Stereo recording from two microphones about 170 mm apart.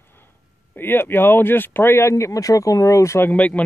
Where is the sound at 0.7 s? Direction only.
10° left (ahead or behind).